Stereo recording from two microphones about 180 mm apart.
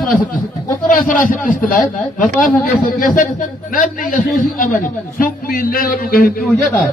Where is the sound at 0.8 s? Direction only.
50° left (ahead or behind).